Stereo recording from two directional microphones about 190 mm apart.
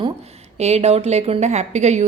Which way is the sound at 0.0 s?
35° right (ahead or behind).